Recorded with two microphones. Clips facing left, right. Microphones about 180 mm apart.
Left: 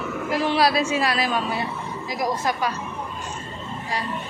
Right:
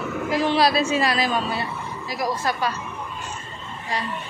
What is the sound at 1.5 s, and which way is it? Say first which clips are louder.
Speech: left 1 dB; 20° left (ahead or behind).